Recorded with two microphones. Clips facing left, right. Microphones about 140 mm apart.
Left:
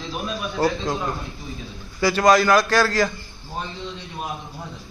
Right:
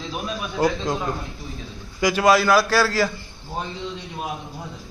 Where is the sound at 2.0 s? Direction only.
10° right (ahead or behind).